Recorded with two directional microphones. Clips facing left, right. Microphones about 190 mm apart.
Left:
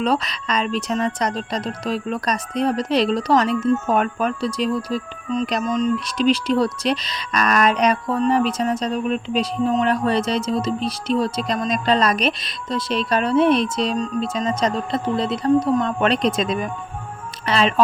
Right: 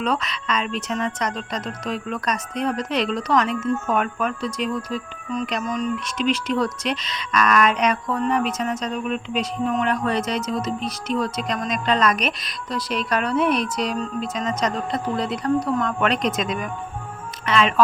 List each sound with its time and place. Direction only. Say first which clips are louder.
0.0 s speech: left 3 dB; 35° left (ahead or behind)
5.6 s speech: left 4 dB; 20° left (ahead or behind)
6.1 s speech: left 4 dB; 35° left (ahead or behind)